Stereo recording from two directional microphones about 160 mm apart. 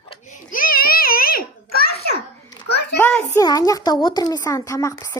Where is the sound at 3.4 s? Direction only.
25° left (ahead or behind).